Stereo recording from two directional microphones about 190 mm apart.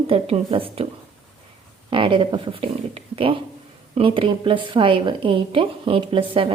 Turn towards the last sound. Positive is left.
turn(degrees=-25)  # may be behind; listen again after turning